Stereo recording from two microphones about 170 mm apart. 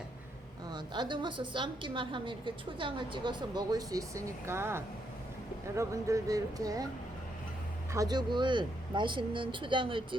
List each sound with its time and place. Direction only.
0.7 s a woman's voice: 25° right (ahead or behind)
7.9 s a woman's voice: 25° right (ahead or behind)